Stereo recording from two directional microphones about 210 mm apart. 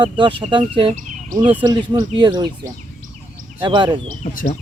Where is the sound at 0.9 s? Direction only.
40° right (ahead or behind).